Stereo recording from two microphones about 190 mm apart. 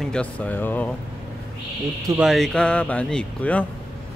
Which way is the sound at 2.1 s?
Centre (ahead or behind).